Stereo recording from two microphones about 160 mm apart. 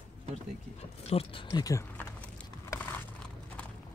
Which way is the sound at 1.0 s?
40° left (ahead or behind).